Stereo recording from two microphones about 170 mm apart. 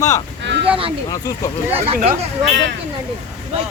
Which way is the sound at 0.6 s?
30° right (ahead or behind).